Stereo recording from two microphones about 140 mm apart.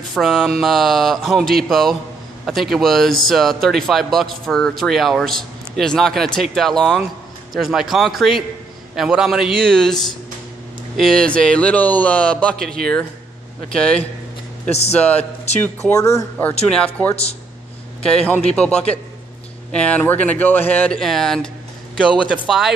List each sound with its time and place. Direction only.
0.1 s speech: centre (ahead or behind)
11.0 s a man's voice: 5° left (ahead or behind)
14.7 s speech: 50° left (ahead or behind)
15.0 s a man's voice: 10° left (ahead or behind)
15.5 s speech: 50° left (ahead or behind)
15.9 s speech: 20° left (ahead or behind)
16.7 s a man's voice: 10° left (ahead or behind)
17.1 s speech: 45° left (ahead or behind)
18.1 s a man's voice: 10° left (ahead or behind)